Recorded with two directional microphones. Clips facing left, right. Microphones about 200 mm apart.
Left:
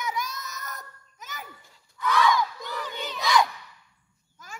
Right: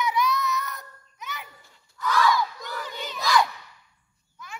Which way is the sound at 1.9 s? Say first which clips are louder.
Even; centre (ahead or behind).